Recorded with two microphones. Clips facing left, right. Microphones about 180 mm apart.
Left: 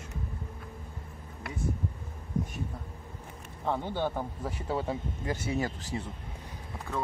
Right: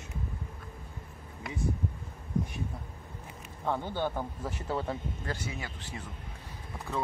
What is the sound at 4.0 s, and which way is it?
Speech, 5° left (ahead or behind).